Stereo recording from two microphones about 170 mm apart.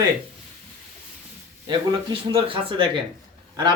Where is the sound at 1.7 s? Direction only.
30° right (ahead or behind).